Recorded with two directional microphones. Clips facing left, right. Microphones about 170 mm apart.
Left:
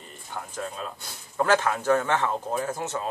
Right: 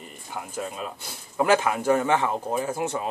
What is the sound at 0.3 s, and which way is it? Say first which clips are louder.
Speech: right 2 dB; 10° right (ahead or behind).